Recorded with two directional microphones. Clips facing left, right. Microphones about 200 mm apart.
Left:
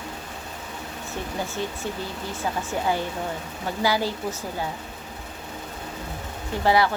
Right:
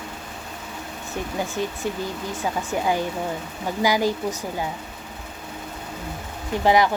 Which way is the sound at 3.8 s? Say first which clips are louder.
Right 3 dB; 15° right (ahead or behind).